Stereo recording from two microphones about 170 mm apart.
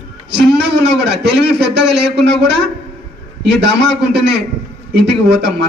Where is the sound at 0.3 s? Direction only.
85° right.